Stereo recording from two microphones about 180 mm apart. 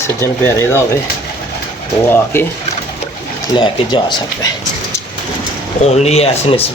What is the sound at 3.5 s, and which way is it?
Speech, 25° left (ahead or behind).